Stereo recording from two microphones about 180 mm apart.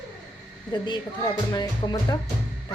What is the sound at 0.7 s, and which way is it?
A woman's voice, 25° left (ahead or behind).